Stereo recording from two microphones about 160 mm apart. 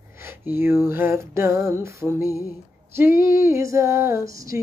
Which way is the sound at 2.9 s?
15° right (ahead or behind).